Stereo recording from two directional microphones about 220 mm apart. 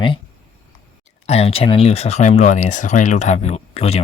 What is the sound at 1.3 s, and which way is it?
Speech, 25° left (ahead or behind).